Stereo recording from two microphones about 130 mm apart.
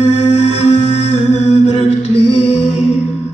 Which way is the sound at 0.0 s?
55° left (ahead or behind).